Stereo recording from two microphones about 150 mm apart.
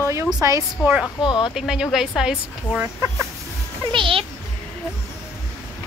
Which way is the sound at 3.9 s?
35° right (ahead or behind).